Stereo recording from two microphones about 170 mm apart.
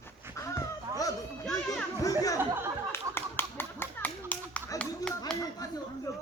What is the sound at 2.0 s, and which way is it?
Speech, 20° left (ahead or behind).